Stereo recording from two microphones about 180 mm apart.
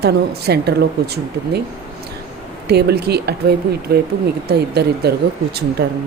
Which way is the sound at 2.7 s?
65° right (ahead or behind).